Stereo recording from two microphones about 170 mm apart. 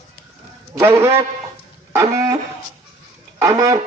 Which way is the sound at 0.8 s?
15° right (ahead or behind).